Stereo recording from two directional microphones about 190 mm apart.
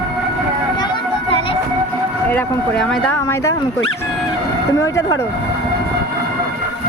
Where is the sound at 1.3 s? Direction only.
30° left (ahead or behind).